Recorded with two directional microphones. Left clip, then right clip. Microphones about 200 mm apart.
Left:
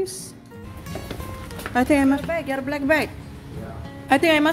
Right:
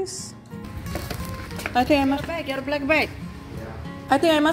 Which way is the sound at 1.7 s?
25° left (ahead or behind).